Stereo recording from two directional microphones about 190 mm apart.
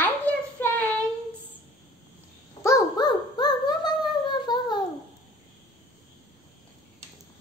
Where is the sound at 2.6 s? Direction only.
20° left (ahead or behind).